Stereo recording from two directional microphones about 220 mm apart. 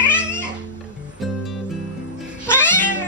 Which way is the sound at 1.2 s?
Centre (ahead or behind).